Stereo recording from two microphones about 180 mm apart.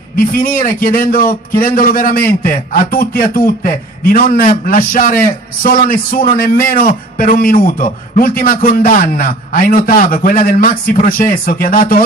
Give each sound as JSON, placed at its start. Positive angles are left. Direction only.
{"t": 0.1, "sound": "a man's voice", "side_deg": 55}